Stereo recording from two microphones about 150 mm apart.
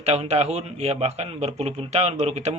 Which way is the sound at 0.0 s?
45° right (ahead or behind).